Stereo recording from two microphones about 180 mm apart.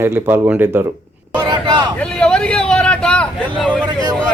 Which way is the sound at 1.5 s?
25° right (ahead or behind).